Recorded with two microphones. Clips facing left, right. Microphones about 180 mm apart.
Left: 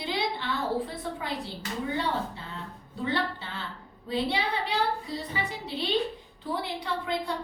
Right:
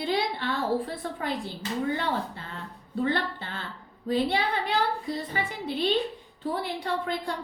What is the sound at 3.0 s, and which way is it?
A woman's voice, 50° right (ahead or behind).